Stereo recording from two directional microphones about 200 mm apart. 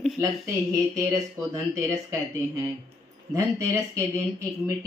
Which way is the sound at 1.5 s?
15° right (ahead or behind).